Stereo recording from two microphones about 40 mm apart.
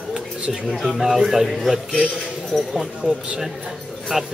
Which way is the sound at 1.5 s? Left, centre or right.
Centre.